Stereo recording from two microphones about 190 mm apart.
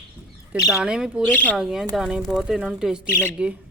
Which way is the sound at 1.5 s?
Centre (ahead or behind).